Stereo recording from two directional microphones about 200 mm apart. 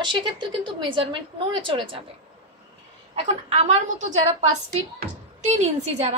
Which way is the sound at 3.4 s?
35° right (ahead or behind).